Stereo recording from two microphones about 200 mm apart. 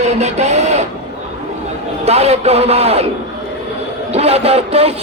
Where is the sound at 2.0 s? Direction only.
30° right (ahead or behind).